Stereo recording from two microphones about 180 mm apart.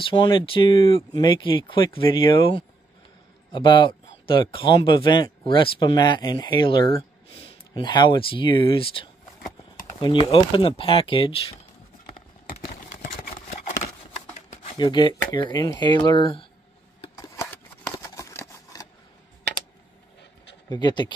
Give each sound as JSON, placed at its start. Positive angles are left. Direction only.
{"t": 0.0, "sound": "speech", "side_deg": 25}
{"t": 3.5, "sound": "speech", "side_deg": 25}
{"t": 14.5, "sound": "a sound", "side_deg": 45}
{"t": 14.8, "sound": "speech", "side_deg": 25}
{"t": 17.0, "sound": "scissors", "side_deg": 20}
{"t": 20.7, "sound": "speech", "side_deg": 25}